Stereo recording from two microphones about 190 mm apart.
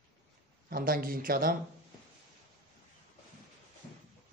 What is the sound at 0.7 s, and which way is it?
Speech, 50° right (ahead or behind).